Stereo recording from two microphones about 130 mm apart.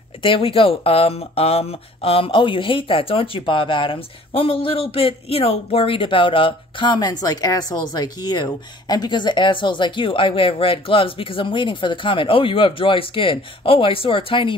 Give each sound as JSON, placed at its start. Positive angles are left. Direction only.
{"t": 0.2, "sound": "speech", "side_deg": 45}